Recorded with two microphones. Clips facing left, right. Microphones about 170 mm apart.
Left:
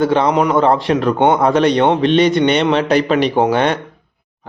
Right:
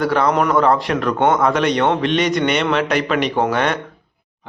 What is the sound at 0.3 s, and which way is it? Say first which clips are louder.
Speech: left 2 dB; 10° left (ahead or behind).